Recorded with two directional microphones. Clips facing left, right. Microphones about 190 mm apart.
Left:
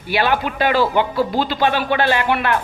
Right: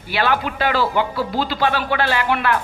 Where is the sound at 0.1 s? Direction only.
15° left (ahead or behind).